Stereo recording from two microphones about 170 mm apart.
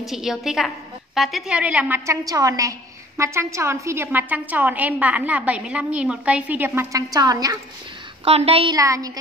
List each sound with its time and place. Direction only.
0.0 s a woman's voice: centre (ahead or behind); by 7.5 s 20° right (ahead or behind)
8.3 s a woman's voice: 35° right (ahead or behind)
8.7 s a woman's voice: 20° right (ahead or behind)